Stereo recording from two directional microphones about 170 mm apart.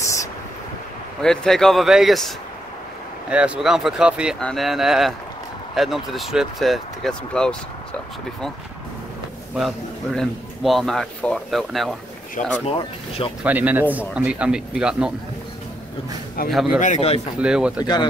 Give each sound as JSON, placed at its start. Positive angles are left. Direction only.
{"t": 1.2, "sound": "speech", "side_deg": 5}
{"t": 9.6, "sound": "speech", "side_deg": 0}
{"t": 12.6, "sound": "speech", "side_deg": 30}
{"t": 13.4, "sound": "speech", "side_deg": -10}
{"t": 16.4, "sound": "speech", "side_deg": 0}
{"t": 16.8, "sound": "speech", "side_deg": 40}
{"t": 17.4, "sound": "speech", "side_deg": -5}